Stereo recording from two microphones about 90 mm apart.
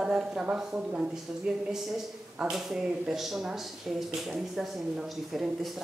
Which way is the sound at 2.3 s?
10° right (ahead or behind).